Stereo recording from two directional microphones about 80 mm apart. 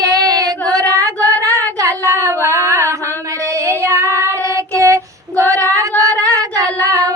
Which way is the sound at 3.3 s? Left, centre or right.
Right.